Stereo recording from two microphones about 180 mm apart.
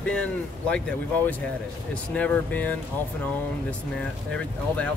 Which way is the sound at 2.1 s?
10° left (ahead or behind).